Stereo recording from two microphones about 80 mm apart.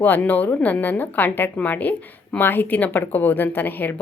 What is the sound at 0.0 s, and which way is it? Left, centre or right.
Speech, left.